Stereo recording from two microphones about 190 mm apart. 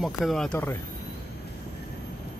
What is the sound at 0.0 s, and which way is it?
Speech, centre (ahead or behind).